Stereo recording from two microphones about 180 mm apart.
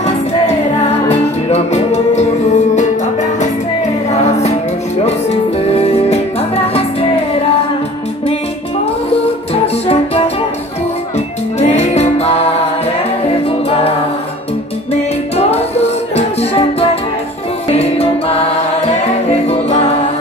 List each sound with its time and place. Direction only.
1.0 s music: 35° left (ahead or behind)
4.1 s music: 35° left (ahead or behind)
9.8 s music: 35° left (ahead or behind)
13.5 s music: 35° left (ahead or behind)
15.3 s music: 35° left (ahead or behind)
17.6 s music: 35° left (ahead or behind)